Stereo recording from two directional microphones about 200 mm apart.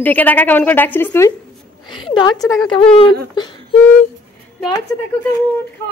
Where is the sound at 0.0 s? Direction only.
10° left (ahead or behind).